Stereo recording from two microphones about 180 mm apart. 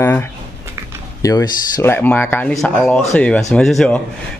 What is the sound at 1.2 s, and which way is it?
Speech, 15° left (ahead or behind).